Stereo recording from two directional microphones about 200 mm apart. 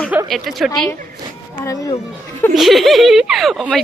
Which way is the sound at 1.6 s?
15° left (ahead or behind).